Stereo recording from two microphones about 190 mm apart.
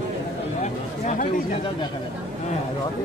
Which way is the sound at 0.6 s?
35° left (ahead or behind).